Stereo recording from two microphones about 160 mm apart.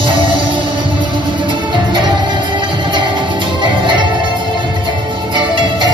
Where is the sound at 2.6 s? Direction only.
30° right (ahead or behind).